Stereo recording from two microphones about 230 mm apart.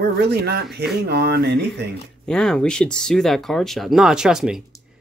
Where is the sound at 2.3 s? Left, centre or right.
Centre.